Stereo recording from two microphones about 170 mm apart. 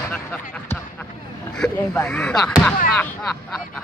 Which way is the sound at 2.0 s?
5° left (ahead or behind).